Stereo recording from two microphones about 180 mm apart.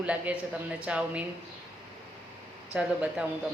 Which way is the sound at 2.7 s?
5° right (ahead or behind).